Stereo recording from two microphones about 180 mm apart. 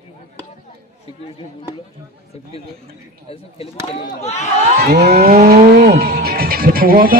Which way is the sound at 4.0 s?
40° left (ahead or behind).